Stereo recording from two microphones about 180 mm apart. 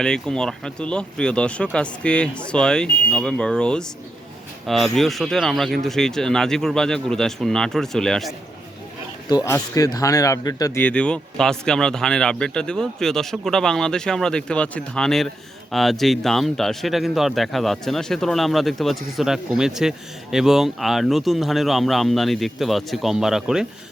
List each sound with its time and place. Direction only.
0.0 s speech: 5° left (ahead or behind)
9.3 s speech: 20° left (ahead or behind)
10.8 s speech: 5° left (ahead or behind)